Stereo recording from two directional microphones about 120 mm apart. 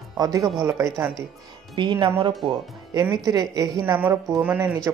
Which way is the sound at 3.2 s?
30° right (ahead or behind).